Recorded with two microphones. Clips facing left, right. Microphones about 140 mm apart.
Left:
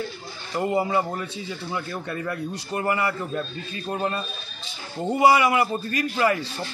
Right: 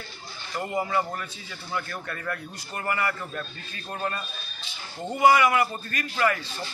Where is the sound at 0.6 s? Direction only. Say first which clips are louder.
Left 4 dB; 25° left (ahead or behind).